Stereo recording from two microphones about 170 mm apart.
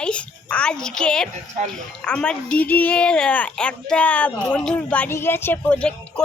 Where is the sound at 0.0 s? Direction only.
5° left (ahead or behind).